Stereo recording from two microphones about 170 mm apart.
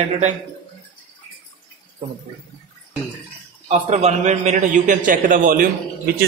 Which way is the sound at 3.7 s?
40° right (ahead or behind).